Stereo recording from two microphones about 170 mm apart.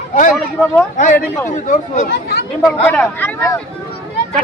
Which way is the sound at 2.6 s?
10° left (ahead or behind).